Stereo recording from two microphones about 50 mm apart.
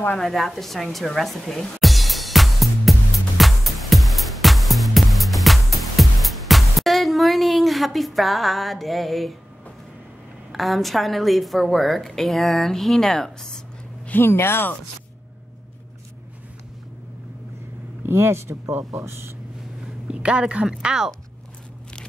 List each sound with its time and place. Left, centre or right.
0.2 s music: centre
10.5 s a woman's voice: centre
14.1 s speech: left
18.0 s speech: right
20.1 s speech: right